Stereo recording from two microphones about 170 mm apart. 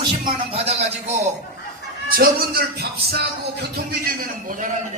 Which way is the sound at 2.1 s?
65° right (ahead or behind).